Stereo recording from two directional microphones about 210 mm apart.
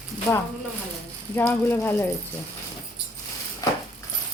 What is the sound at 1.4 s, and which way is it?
Speech, 10° left (ahead or behind).